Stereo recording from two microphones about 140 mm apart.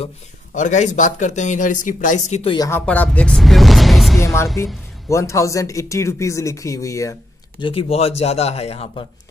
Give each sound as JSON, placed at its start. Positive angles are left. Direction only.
{"t": 0.6, "sound": "speech", "side_deg": 60}
{"t": 2.4, "sound": "speech", "side_deg": 30}
{"t": 2.7, "sound": "speech", "side_deg": 10}
{"t": 4.2, "sound": "speech", "side_deg": 20}
{"t": 7.6, "sound": "speech", "side_deg": 45}